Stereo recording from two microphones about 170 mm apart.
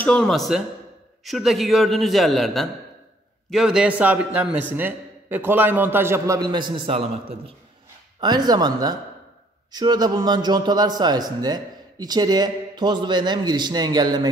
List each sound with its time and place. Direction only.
0.0 s a man's voice: 5° left (ahead or behind); by 7.1 s 30° right (ahead or behind)
8.2 s a man's voice: 25° right (ahead or behind)